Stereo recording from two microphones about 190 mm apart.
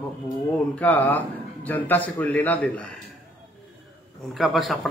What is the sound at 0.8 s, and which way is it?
A man's voice, 10° left (ahead or behind).